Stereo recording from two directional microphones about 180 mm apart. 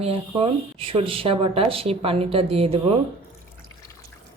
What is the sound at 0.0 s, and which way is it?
Speech, 30° right (ahead or behind).